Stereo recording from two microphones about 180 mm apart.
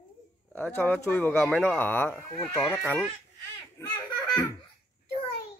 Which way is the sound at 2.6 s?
10° left (ahead or behind).